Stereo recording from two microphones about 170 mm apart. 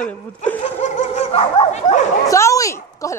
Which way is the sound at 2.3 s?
20° left (ahead or behind).